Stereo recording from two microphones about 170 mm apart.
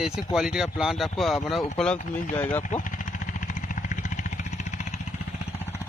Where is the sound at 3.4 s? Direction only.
50° left (ahead or behind).